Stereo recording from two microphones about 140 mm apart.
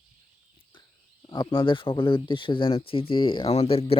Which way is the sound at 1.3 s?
35° left (ahead or behind).